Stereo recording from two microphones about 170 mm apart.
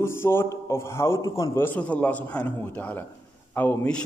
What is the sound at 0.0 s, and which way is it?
A man's voice, 15° left (ahead or behind).